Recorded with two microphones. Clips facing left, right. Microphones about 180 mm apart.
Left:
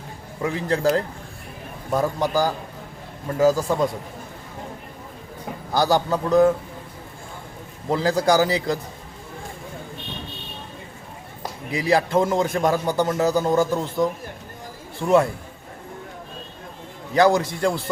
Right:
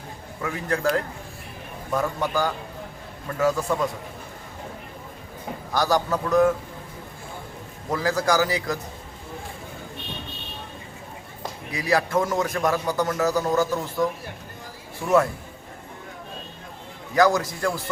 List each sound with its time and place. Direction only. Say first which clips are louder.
0.4 s a man's voice: left 4 dB; 30° left (ahead or behind)
1.9 s a man's voice: left 3 dB; 30° left (ahead or behind)
5.7 s a man's voice: left 3 dB; 30° left (ahead or behind)
7.9 s a man's voice: left 4 dB; 30° left (ahead or behind)
11.7 s a man's voice: left 3 dB; 25° left (ahead or behind)
17.2 s a man's voice: left 2 dB; 30° left (ahead or behind)